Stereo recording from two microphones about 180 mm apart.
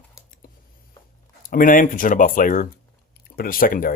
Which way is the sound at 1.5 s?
50° left (ahead or behind).